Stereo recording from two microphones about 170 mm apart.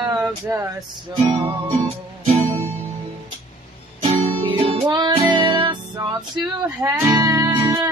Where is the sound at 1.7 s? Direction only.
35° right (ahead or behind).